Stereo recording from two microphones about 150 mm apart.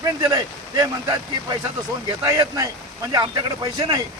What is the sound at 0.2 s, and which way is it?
Speech, 25° right (ahead or behind).